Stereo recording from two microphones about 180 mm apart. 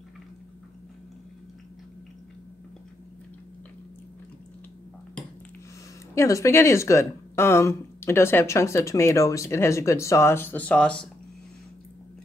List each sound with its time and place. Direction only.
6.1 s a woman's voice: 15° left (ahead or behind)